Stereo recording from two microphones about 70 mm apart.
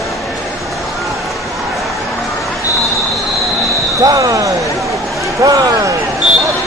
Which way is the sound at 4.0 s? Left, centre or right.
Right.